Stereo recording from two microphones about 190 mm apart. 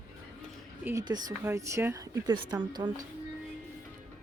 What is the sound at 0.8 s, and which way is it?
Speech, 20° right (ahead or behind).